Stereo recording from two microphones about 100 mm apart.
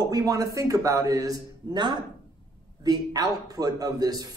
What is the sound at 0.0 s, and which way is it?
A man's voice, 40° right (ahead or behind).